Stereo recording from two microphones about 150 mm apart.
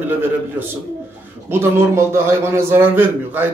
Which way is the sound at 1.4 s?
15° right (ahead or behind).